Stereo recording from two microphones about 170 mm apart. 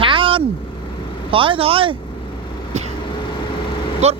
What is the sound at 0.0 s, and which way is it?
Vehicle, 30° right (ahead or behind).